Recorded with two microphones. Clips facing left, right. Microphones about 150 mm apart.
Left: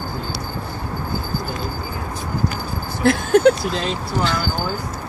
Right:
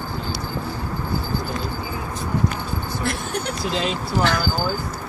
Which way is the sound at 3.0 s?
90° left.